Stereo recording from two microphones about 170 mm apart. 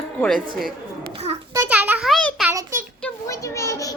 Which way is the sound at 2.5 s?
15° right (ahead or behind).